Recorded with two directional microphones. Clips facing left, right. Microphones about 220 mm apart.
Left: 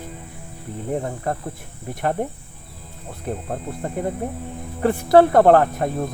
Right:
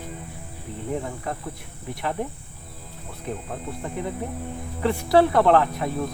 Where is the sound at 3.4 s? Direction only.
45° left (ahead or behind).